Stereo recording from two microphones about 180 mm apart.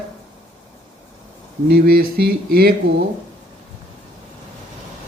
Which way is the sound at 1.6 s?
55° right (ahead or behind).